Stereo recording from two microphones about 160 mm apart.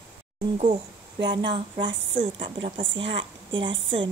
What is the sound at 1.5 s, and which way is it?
A woman's voice, 30° right (ahead or behind).